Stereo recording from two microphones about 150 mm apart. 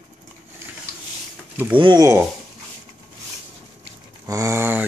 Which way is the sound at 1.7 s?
30° right (ahead or behind).